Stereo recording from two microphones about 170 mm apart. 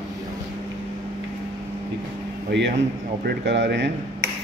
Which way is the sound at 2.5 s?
90° right.